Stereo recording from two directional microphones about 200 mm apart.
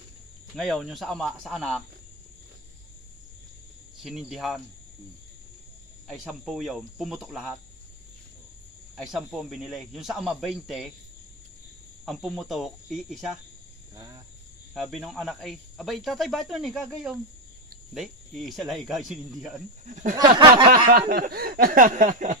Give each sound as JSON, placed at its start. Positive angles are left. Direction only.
{"t": 0.6, "sound": "speech", "side_deg": 0}
{"t": 4.0, "sound": "speech", "side_deg": 0}
{"t": 6.0, "sound": "speech", "side_deg": 0}
{"t": 8.9, "sound": "speech", "side_deg": 0}
{"t": 12.1, "sound": "speech", "side_deg": 0}
{"t": 13.9, "sound": "cricket", "side_deg": -20}
{"t": 14.7, "sound": "speech", "side_deg": 0}
{"t": 19.9, "sound": "speech", "side_deg": -40}
{"t": 20.3, "sound": "a sound", "side_deg": -25}
{"t": 20.9, "sound": "speech", "side_deg": -50}